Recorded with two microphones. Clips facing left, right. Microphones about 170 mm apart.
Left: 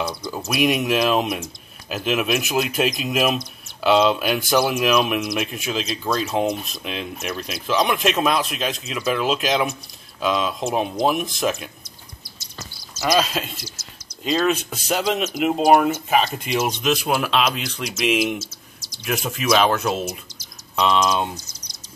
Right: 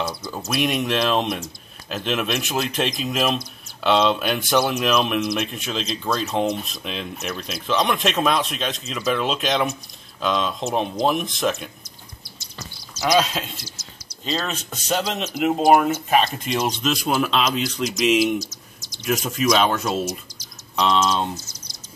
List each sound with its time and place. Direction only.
0.0 s speech: 5° right (ahead or behind)
0.5 s speech: 5° left (ahead or behind)
12.5 s a sound: 5° left (ahead or behind)
14.2 s speech: 10° left (ahead or behind)
18.0 s speech: 55° left (ahead or behind)
19.0 s speech: 5° left (ahead or behind)